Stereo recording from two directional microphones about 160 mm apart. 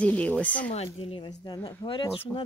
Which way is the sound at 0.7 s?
35° left (ahead or behind).